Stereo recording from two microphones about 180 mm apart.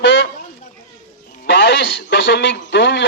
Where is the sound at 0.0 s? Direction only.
90° left.